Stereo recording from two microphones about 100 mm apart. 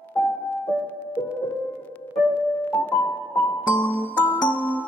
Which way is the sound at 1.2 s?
20° left (ahead or behind).